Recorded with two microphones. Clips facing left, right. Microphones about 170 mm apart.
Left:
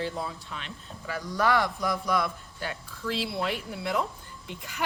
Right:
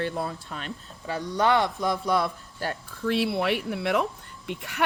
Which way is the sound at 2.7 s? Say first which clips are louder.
Right 6 dB; 55° right (ahead or behind).